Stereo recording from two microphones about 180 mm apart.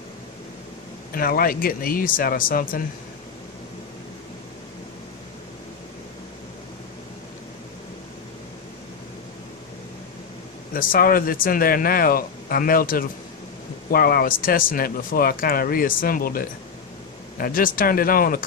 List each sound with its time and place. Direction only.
1.1 s speech: 55° left (ahead or behind)
10.7 s speech: 50° left (ahead or behind)